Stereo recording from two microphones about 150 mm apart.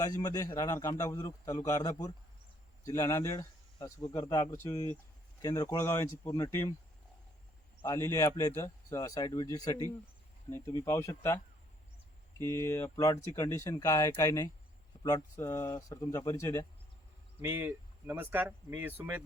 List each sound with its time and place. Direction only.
0.0 s speech: 25° left (ahead or behind)
7.8 s speech: 20° left (ahead or behind)
12.4 s speech: 15° left (ahead or behind)
17.4 s speech: 15° right (ahead or behind)